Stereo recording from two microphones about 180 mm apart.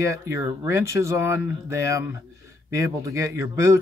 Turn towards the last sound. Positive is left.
turn(degrees=-15)  # may be behind; listen again after turning